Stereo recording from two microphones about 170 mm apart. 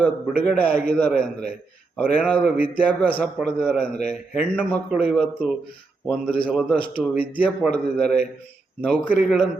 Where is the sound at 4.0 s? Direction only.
45° left (ahead or behind).